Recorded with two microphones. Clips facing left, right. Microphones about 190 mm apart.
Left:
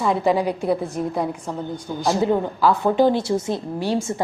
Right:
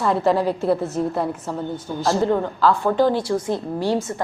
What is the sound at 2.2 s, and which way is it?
A woman's voice, 15° left (ahead or behind).